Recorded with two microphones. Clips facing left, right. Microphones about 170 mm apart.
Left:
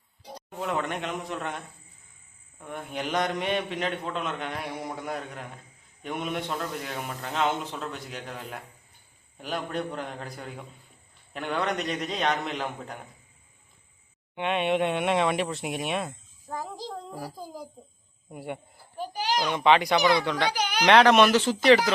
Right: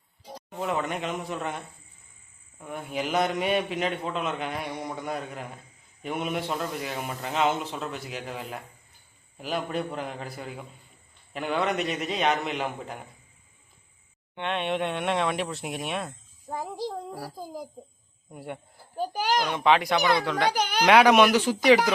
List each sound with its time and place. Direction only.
0.3 s a man's voice: centre (ahead or behind)
14.3 s a man's voice: 5° left (ahead or behind)
16.5 s child singing: 15° right (ahead or behind)
18.3 s a man's voice: centre (ahead or behind)
19.1 s a child's voice: 50° right (ahead or behind)
19.5 s a man's voice: centre (ahead or behind)
20.5 s a child's voice: 50° right (ahead or behind)
20.8 s speech: 10° right (ahead or behind)